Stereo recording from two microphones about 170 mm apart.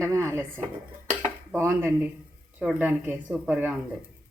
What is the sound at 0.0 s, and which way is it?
A woman's voice, 15° right (ahead or behind).